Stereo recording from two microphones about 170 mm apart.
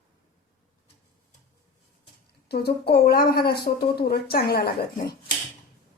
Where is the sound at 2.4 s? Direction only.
70° left (ahead or behind).